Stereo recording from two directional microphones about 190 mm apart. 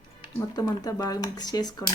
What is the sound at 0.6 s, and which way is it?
Speech, 20° left (ahead or behind).